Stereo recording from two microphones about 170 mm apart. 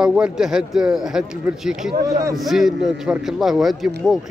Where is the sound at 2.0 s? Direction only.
20° right (ahead or behind).